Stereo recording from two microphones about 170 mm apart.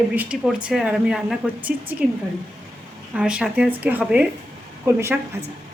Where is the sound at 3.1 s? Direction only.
5° right (ahead or behind).